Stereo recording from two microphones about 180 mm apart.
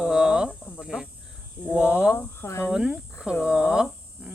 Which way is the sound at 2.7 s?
5° right (ahead or behind).